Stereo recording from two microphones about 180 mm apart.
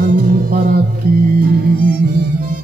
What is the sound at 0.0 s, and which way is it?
Music, 55° right (ahead or behind).